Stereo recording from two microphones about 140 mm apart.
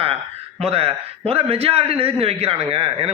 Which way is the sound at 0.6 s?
45° right (ahead or behind).